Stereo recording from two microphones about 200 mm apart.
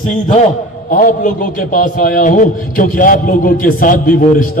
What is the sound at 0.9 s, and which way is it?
A man's voice, 40° left (ahead or behind).